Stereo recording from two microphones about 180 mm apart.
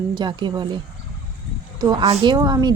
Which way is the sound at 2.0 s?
35° right (ahead or behind).